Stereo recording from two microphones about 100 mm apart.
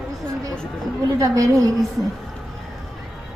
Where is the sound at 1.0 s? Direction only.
35° right (ahead or behind).